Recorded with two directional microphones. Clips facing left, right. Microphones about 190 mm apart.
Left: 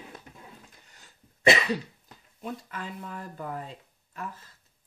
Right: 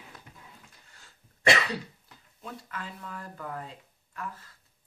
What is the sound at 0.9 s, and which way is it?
Throat clearing, 20° left (ahead or behind).